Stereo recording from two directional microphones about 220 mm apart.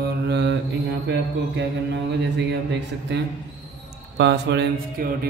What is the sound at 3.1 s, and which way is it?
Speech, 55° right (ahead or behind).